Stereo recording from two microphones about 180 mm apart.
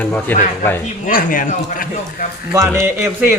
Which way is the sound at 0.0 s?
5° left (ahead or behind).